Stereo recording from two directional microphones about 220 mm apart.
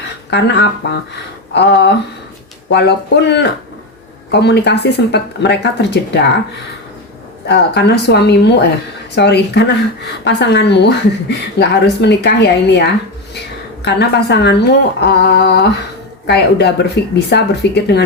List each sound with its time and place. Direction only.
0.3 s a woman's voice: 50° left (ahead or behind)
7.4 s a woman's voice: 50° left (ahead or behind)